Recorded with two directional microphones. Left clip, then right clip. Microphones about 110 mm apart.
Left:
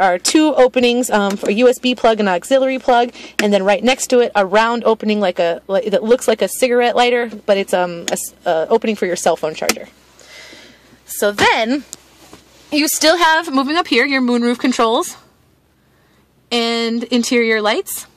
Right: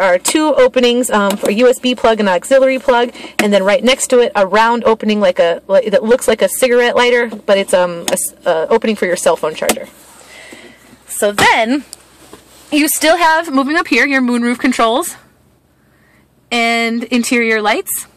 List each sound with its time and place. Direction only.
0.0 s speech: 55° left (ahead or behind)
7.7 s a woman's voice: 45° left (ahead or behind); by 9.8 s 65° left (ahead or behind)
10.4 s a sound: 50° left (ahead or behind)
11.1 s a woman's voice: 50° left (ahead or behind)
12.6 s a woman's voice: 30° left (ahead or behind)
13.1 s a woman's voice: 45° left (ahead or behind)
13.5 s speech: 30° left (ahead or behind)
16.5 s speech: 30° left (ahead or behind)